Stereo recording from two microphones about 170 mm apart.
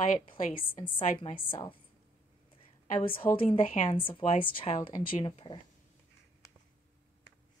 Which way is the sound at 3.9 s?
30° left (ahead or behind).